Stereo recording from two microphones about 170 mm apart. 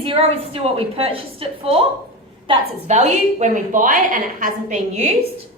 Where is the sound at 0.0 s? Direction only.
35° right (ahead or behind).